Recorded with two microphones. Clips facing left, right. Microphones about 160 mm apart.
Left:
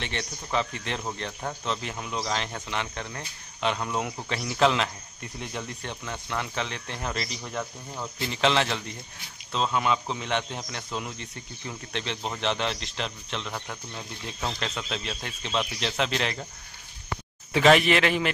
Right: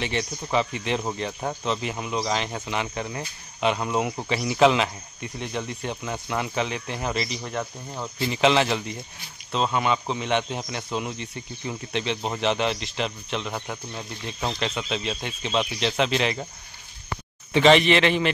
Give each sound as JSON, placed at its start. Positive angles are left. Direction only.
{"t": 0.0, "sound": "speech", "side_deg": -5}
{"t": 17.5, "sound": "speech", "side_deg": 5}